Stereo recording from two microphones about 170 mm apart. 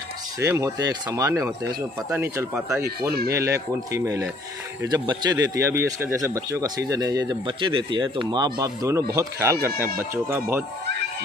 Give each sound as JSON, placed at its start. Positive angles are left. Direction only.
{"t": 0.4, "sound": "speech", "side_deg": -15}
{"t": 3.0, "sound": "speech", "side_deg": -65}
{"t": 3.3, "sound": "speech", "side_deg": -20}